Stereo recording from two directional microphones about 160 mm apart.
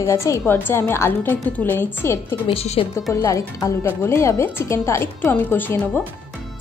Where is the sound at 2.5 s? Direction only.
35° left (ahead or behind).